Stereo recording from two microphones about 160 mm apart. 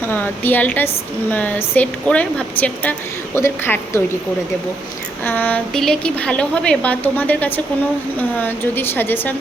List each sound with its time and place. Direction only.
0.1 s a woman's voice: 10° left (ahead or behind)
5.2 s a woman's voice: 10° left (ahead or behind)